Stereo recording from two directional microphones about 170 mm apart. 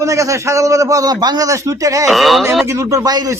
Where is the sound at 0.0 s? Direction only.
20° right (ahead or behind).